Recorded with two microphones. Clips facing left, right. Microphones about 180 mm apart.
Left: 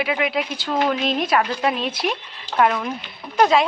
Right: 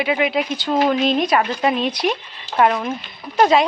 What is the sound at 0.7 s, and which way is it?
Speech, 25° right (ahead or behind).